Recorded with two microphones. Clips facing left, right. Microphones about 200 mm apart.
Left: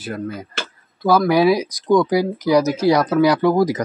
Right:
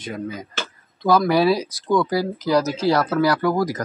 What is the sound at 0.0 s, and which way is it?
Speech, 5° left (ahead or behind).